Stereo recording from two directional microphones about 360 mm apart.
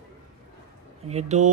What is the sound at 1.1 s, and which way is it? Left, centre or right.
Speech, centre.